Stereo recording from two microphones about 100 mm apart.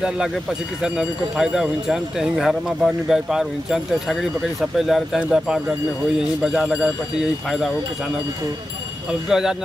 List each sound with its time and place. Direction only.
0.0 s speech: 5° right (ahead or behind)
9.3 s speech: 5° right (ahead or behind)